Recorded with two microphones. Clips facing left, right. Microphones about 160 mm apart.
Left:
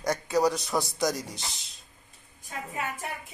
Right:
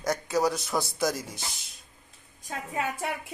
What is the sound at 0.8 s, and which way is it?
Speech, 5° right (ahead or behind).